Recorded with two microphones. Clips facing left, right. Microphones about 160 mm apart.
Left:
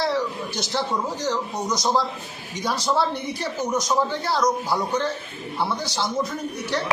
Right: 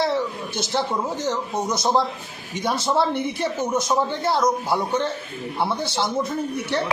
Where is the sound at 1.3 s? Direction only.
25° right (ahead or behind).